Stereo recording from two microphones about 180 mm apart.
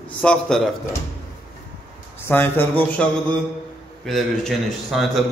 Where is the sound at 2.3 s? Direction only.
10° left (ahead or behind).